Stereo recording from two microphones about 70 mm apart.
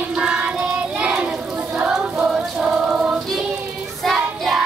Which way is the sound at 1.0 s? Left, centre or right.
Centre.